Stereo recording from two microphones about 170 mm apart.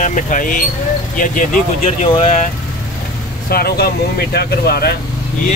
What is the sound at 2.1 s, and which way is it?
Music, 35° left (ahead or behind).